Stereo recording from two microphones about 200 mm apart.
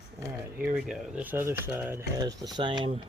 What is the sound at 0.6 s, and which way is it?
Speech, 5° right (ahead or behind).